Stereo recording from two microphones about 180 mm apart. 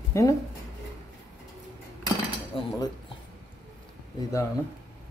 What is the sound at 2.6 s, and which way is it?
Speech, 30° left (ahead or behind).